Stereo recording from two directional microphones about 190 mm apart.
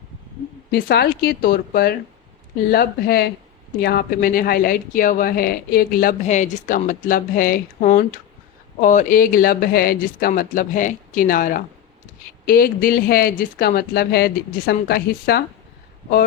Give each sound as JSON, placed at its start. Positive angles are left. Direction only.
{"t": 0.7, "sound": "speech", "side_deg": 55}